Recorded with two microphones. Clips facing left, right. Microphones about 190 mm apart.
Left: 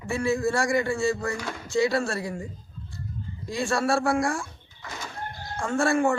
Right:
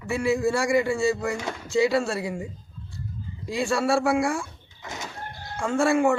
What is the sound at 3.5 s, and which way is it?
Speech, 5° right (ahead or behind).